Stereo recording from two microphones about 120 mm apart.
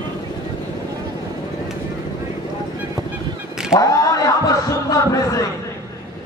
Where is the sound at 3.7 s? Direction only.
30° left (ahead or behind).